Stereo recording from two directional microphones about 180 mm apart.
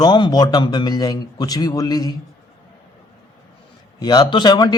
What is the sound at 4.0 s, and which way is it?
Speech, 20° left (ahead or behind).